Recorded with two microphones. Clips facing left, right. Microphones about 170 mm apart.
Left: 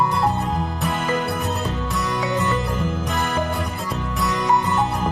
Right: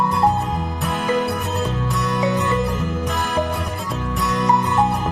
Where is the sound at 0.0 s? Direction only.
Centre (ahead or behind).